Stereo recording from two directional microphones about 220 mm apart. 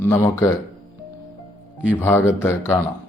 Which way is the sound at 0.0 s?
10° left (ahead or behind).